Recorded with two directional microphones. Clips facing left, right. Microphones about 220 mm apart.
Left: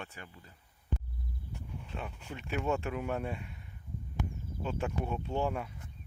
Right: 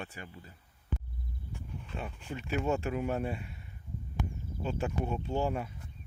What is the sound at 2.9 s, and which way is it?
Speech, 5° right (ahead or behind).